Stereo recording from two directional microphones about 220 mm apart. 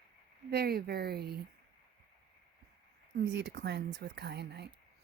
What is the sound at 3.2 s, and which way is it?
Speech, 55° right (ahead or behind).